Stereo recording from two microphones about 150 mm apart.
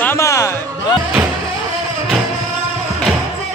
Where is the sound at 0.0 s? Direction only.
15° left (ahead or behind).